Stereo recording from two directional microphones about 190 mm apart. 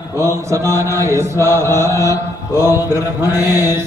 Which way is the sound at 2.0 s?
15° left (ahead or behind).